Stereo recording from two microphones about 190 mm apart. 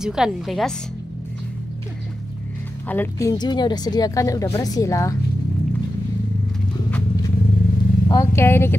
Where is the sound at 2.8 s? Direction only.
10° left (ahead or behind).